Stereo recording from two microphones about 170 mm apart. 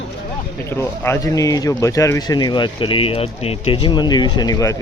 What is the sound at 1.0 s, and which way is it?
A man's voice, 15° left (ahead or behind).